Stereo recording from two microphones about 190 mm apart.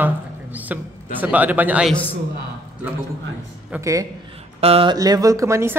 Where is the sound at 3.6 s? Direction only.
10° right (ahead or behind).